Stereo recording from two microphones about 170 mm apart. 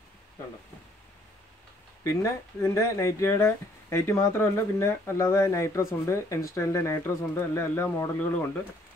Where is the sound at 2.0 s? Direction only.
15° left (ahead or behind).